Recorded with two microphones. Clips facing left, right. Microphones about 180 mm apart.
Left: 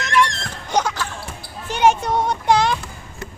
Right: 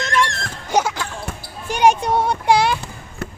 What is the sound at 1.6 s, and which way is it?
A child's voice, 15° right (ahead or behind).